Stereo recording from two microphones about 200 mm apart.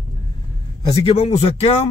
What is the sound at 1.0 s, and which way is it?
Speech, 30° left (ahead or behind).